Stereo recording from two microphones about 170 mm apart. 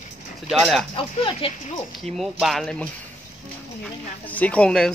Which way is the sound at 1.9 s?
Centre (ahead or behind).